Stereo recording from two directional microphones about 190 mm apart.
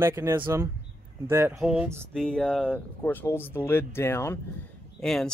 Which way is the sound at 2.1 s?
5° left (ahead or behind).